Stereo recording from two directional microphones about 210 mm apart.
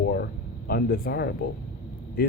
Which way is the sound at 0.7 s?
45° left (ahead or behind).